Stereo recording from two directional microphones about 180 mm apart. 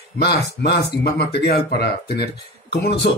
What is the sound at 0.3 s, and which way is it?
Speech, 60° left (ahead or behind).